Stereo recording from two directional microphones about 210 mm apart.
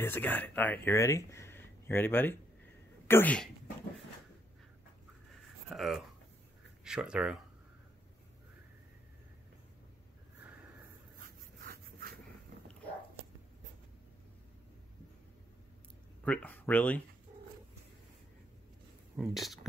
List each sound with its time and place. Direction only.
0.0 s speech: 10° left (ahead or behind)
5.7 s speech: centre (ahead or behind)
11.6 s a sound: 45° right (ahead or behind)
16.3 s speech: 10° left (ahead or behind)
19.1 s speech: centre (ahead or behind)